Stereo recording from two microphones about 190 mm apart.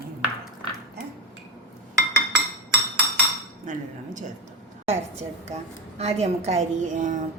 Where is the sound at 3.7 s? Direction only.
40° right (ahead or behind).